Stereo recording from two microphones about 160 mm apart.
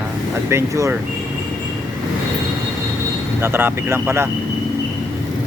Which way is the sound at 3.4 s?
15° right (ahead or behind).